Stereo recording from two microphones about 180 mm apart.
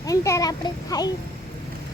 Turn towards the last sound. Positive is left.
turn(degrees=20)  # may be behind; listen again after turning